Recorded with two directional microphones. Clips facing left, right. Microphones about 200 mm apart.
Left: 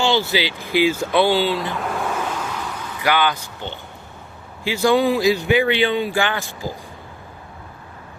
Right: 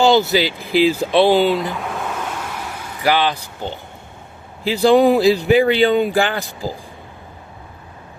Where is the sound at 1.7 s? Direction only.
Centre (ahead or behind).